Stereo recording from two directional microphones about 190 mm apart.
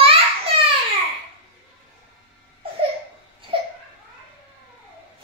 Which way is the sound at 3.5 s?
25° right (ahead or behind).